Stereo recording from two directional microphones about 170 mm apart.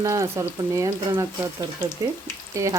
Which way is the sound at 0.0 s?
20° right (ahead or behind).